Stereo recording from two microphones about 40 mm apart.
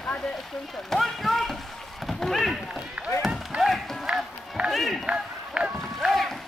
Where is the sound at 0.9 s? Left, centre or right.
Centre.